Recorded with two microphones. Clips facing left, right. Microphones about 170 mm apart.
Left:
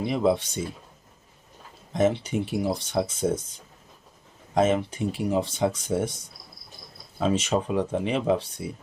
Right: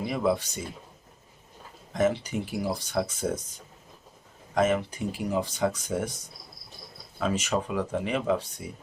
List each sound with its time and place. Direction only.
0.1 s speech: 25° left (ahead or behind)
1.9 s speech: 25° left (ahead or behind)
4.5 s speech: 25° left (ahead or behind)
7.2 s speech: 25° left (ahead or behind)